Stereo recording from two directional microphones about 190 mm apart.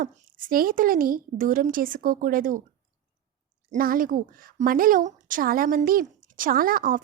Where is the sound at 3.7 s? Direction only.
45° right (ahead or behind).